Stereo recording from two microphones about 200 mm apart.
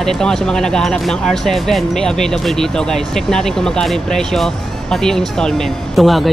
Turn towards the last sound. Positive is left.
turn(degrees=0)  # may be behind; listen again after turning